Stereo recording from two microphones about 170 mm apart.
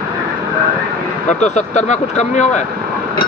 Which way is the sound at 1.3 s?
45° left (ahead or behind).